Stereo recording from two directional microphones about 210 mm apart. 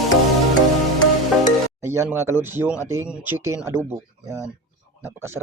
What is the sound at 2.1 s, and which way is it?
Speech, 10° right (ahead or behind).